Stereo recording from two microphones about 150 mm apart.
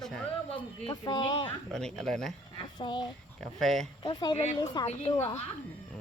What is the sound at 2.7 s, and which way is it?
Speech, 30° left (ahead or behind).